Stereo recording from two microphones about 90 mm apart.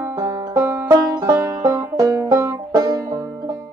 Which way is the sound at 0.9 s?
50° right (ahead or behind).